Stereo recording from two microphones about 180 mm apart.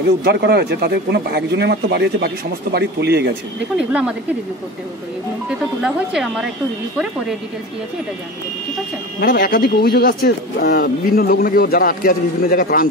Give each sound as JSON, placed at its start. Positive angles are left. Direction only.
{"t": 0.2, "sound": "speech", "side_deg": -65}
{"t": 5.8, "sound": "speech", "side_deg": -5}
{"t": 9.2, "sound": "speech", "side_deg": 50}